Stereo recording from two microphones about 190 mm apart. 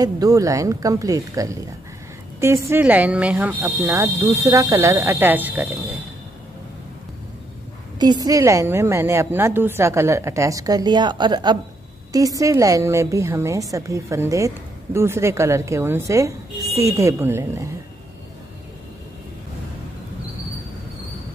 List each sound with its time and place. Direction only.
0.0 s a woman's voice: 20° right (ahead or behind)
8.0 s a woman's voice: 20° right (ahead or behind)